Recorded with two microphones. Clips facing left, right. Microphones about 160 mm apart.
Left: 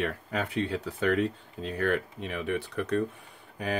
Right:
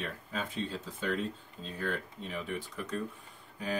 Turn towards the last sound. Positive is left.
turn(degrees=70)  # may be behind; listen again after turning